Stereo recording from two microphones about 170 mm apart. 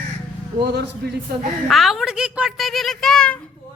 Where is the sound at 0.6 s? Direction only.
70° right (ahead or behind).